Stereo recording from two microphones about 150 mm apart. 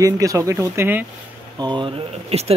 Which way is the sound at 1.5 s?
30° right (ahead or behind).